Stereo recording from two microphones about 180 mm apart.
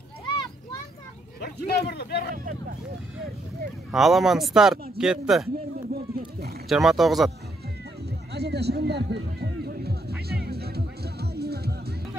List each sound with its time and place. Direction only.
1.4 s speech: 60° left (ahead or behind)
3.9 s speech: centre (ahead or behind)
5.9 s a sound: 60° right (ahead or behind)
6.7 s speech: centre (ahead or behind)
8.1 s a sound: 65° right (ahead or behind)
10.2 s music: 60° right (ahead or behind)